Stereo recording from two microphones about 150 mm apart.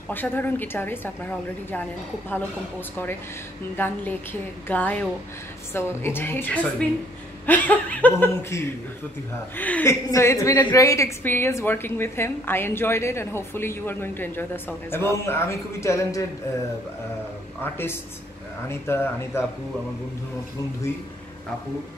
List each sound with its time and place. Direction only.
0.1 s a woman's voice: 10° left (ahead or behind)
3.7 s a woman's voice: 15° left (ahead or behind)
18.7 s a woman's voice: 15° left (ahead or behind)